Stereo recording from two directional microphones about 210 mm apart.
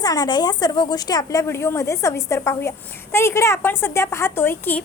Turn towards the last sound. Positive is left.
turn(degrees=10)  # may be behind; listen again after turning